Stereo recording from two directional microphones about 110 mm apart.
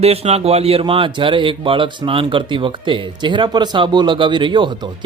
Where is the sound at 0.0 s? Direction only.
65° right (ahead or behind).